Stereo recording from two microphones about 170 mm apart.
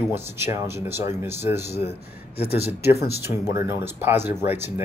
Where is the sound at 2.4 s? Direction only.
70° left (ahead or behind).